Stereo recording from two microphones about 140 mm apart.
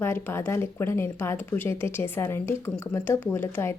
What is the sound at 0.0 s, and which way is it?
Speech, 15° left (ahead or behind).